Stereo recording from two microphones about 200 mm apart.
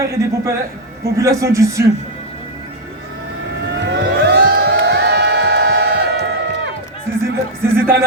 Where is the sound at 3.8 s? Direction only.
60° right (ahead or behind).